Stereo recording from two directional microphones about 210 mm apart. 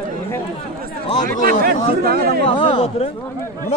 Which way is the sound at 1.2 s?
45° right (ahead or behind).